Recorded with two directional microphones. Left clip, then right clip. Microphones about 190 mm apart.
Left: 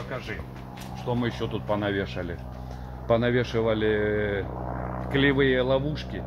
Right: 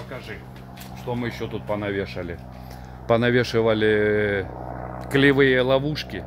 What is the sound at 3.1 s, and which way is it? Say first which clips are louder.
Speech: right 4 dB; 60° right (ahead or behind).